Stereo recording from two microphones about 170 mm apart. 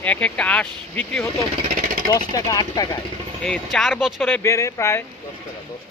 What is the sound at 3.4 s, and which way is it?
Speech, centre (ahead or behind).